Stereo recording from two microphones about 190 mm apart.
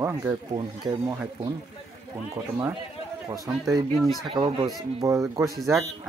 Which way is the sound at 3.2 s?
20° right (ahead or behind).